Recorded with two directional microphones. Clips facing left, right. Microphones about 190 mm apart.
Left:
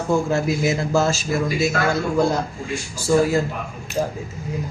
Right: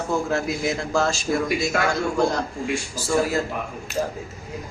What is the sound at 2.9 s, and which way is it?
Speech, centre (ahead or behind).